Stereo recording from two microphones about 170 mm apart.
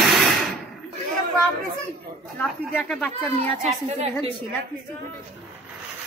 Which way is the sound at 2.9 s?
10° left (ahead or behind).